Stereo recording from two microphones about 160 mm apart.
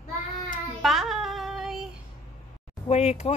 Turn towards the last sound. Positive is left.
turn(degrees=40)  # may be behind; listen again after turning